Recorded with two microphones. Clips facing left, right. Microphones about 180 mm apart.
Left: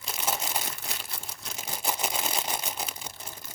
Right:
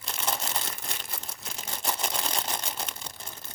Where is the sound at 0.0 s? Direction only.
5° left (ahead or behind).